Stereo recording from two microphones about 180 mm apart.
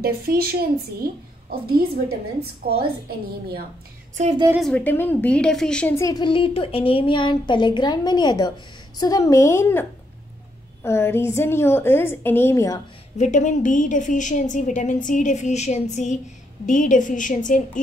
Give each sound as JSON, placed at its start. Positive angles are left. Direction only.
{"t": 0.0, "sound": "a woman's voice", "side_deg": -55}
{"t": 4.6, "sound": "a woman's voice", "side_deg": 5}
{"t": 5.9, "sound": "a woman's voice", "side_deg": 20}
{"t": 13.2, "sound": "a woman's voice", "side_deg": 45}